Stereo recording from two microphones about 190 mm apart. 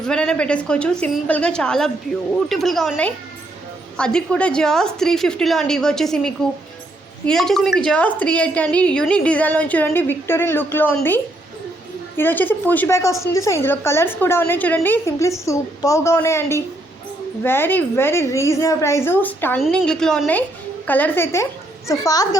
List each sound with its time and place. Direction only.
0.0 s a woman's voice: 5° left (ahead or behind); by 22.4 s 20° left (ahead or behind)